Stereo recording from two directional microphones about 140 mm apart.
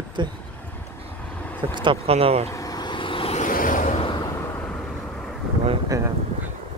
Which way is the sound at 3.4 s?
70° left (ahead or behind).